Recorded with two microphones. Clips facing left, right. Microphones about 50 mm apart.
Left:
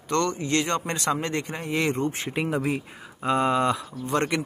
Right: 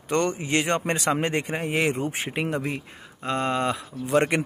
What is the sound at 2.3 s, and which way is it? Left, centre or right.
Speech, centre.